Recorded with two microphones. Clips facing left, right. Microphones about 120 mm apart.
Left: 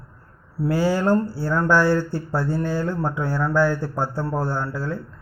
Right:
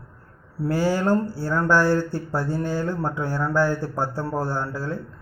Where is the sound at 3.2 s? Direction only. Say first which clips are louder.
Left 2 dB; 15° right (ahead or behind).